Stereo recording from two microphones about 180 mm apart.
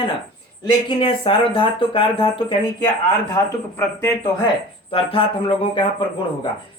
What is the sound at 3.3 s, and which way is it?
Speech, 15° left (ahead or behind).